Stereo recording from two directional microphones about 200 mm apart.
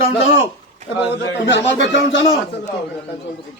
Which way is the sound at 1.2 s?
65° left (ahead or behind).